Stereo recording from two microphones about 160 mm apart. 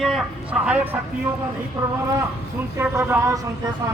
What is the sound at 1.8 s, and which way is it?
A man's voice, 20° right (ahead or behind).